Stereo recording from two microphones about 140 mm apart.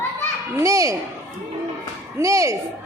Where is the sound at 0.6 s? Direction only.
20° right (ahead or behind).